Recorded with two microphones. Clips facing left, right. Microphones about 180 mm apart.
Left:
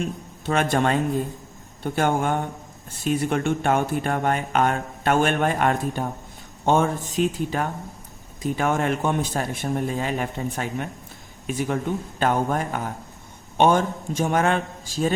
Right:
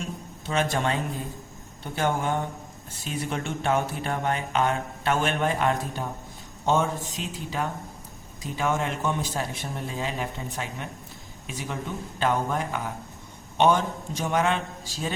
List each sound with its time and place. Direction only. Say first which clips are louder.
0.0 s a man's voice: left 6 dB; 60° left (ahead or behind)